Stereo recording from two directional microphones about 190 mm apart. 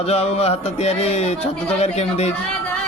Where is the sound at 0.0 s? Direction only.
35° left (ahead or behind).